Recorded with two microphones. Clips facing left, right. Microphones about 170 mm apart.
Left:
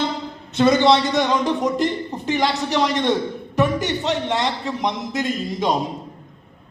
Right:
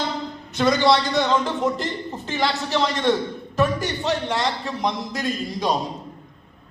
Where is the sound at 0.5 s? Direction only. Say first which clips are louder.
Left 3 dB; 25° left (ahead or behind).